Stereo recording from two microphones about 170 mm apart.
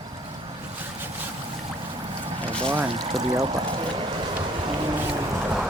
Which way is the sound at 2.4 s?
5° left (ahead or behind).